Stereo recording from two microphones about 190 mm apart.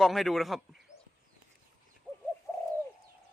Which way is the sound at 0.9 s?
40° left (ahead or behind).